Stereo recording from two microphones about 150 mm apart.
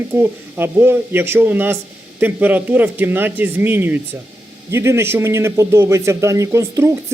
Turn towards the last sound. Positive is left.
turn(degrees=-20)  # may be behind; listen again after turning